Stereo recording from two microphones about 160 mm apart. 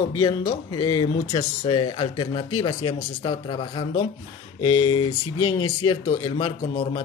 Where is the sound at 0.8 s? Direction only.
30° left (ahead or behind).